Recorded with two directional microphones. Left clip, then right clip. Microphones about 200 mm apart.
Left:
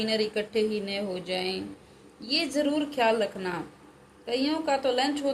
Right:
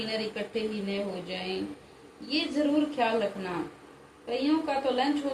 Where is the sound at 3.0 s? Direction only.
45° left (ahead or behind).